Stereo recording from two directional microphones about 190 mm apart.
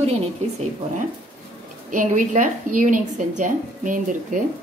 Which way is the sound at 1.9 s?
40° right (ahead or behind).